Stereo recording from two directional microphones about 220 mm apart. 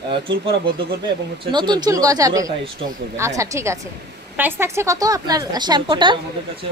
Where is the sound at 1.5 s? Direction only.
20° right (ahead or behind).